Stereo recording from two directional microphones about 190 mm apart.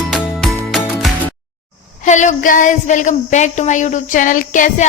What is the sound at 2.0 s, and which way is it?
Child singing, 40° left (ahead or behind).